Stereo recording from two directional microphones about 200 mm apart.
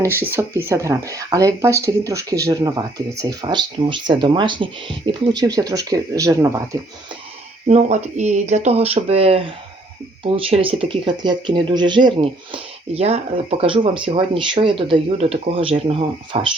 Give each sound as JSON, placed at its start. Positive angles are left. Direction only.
{"t": 0.3, "sound": "speech", "side_deg": -15}
{"t": 7.7, "sound": "speech", "side_deg": -35}